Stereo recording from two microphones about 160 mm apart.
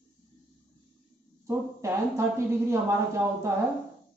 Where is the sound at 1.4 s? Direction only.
20° right (ahead or behind).